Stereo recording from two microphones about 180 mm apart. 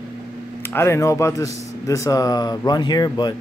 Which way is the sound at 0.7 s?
15° left (ahead or behind).